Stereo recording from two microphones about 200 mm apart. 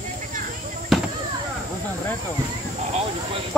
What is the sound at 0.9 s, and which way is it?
Fireworks, centre (ahead or behind).